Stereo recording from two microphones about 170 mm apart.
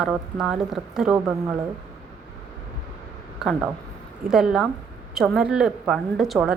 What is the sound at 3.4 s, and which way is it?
A woman's voice, centre (ahead or behind).